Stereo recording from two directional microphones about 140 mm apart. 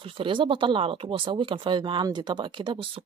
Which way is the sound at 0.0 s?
40° right (ahead or behind).